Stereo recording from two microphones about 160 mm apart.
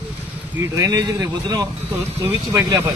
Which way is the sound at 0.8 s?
25° right (ahead or behind).